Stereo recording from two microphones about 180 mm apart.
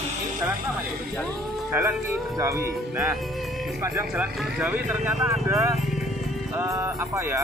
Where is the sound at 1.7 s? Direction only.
15° right (ahead or behind).